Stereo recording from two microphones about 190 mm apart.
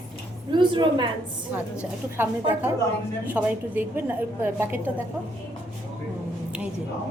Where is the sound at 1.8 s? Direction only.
10° right (ahead or behind).